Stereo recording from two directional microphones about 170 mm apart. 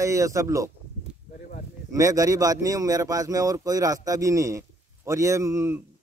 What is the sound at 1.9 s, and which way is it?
Speech, 20° right (ahead or behind).